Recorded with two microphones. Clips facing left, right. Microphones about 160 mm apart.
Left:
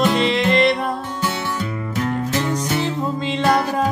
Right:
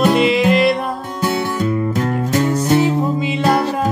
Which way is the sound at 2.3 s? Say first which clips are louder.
Right 6 dB; 40° right (ahead or behind).